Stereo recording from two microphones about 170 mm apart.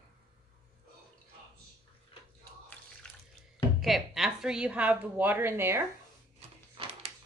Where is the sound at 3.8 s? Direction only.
Centre (ahead or behind).